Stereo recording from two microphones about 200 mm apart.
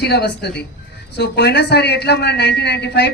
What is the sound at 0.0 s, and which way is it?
A woman's voice, 55° left (ahead or behind).